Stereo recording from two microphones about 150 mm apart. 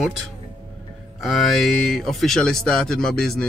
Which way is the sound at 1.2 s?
Centre (ahead or behind).